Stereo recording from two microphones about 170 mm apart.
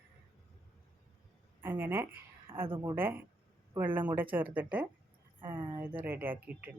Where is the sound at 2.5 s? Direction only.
30° right (ahead or behind).